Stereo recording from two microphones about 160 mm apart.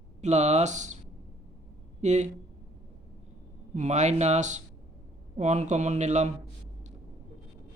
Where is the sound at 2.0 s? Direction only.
45° right (ahead or behind).